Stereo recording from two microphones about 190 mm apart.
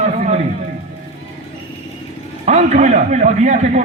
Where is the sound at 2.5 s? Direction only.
35° right (ahead or behind).